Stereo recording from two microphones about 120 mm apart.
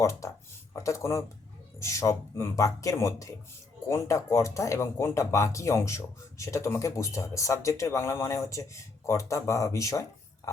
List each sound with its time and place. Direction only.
0.0 s speech: 25° left (ahead or behind)